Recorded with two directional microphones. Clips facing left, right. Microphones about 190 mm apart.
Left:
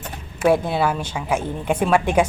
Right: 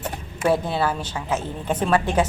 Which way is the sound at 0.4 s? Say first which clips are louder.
Left 3 dB; 10° left (ahead or behind).